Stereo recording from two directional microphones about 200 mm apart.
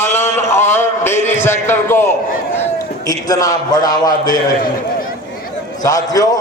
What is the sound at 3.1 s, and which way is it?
A man's voice, 15° left (ahead or behind).